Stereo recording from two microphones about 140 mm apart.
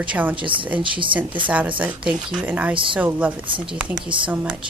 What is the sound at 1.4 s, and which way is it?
Speech, 10° right (ahead or behind).